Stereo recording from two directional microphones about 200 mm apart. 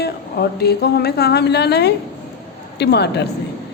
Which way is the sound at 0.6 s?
55° left (ahead or behind).